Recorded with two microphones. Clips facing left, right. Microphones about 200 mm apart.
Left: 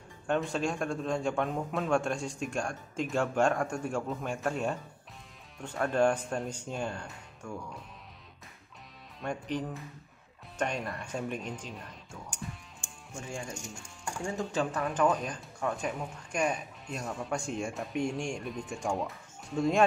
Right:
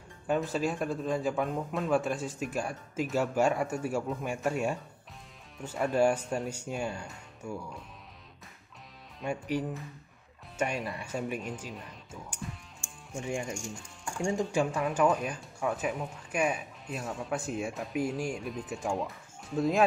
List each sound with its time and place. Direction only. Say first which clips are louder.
0.3 s speech: right 1 dB; 5° right (ahead or behind)
9.2 s speech: right 2 dB; 10° right (ahead or behind)
13.3 s speech: right 5 dB; 20° right (ahead or behind); by 19.8 s centre (ahead or behind)